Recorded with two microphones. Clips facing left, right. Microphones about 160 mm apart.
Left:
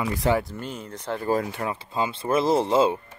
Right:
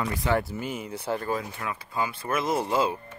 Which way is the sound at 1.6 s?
25° left (ahead or behind).